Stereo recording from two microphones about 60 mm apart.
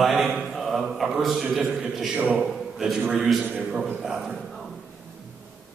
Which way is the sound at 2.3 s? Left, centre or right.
Centre.